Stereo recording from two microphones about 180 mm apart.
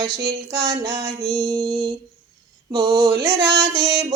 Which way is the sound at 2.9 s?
15° right (ahead or behind).